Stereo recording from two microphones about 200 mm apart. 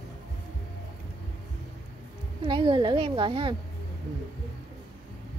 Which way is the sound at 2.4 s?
25° right (ahead or behind).